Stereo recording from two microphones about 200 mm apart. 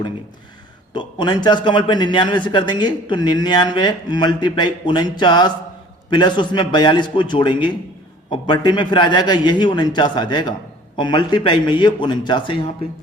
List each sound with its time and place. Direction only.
0.9 s a man's voice: 20° left (ahead or behind)